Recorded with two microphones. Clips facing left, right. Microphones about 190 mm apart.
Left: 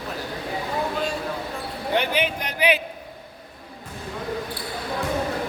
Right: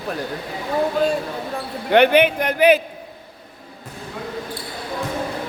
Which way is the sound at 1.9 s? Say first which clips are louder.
Right 10 dB; 65° right (ahead or behind).